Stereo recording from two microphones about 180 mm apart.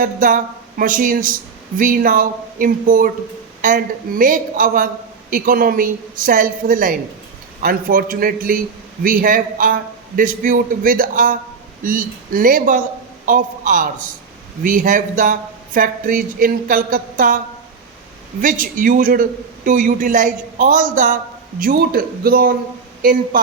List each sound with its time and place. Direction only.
0.0 s a man's voice: 50° right (ahead or behind)
18.4 s a man's voice: 50° right (ahead or behind)